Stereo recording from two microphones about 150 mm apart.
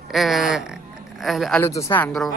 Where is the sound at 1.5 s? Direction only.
20° left (ahead or behind).